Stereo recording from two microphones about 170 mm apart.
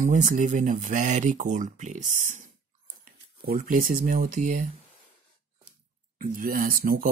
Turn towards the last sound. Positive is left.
turn(degrees=-60)  # may be behind; listen again after turning